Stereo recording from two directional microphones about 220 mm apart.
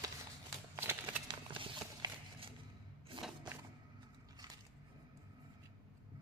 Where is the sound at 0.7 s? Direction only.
10° right (ahead or behind).